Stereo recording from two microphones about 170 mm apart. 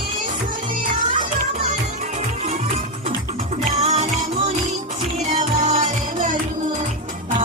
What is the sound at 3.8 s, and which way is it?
Music, 40° right (ahead or behind).